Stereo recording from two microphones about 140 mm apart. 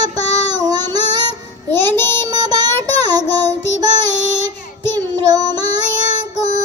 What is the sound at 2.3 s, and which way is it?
Child singing, 30° right (ahead or behind).